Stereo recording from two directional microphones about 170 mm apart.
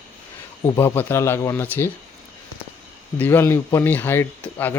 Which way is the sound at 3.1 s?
10° left (ahead or behind).